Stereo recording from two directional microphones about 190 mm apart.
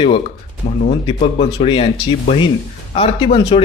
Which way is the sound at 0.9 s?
35° left (ahead or behind).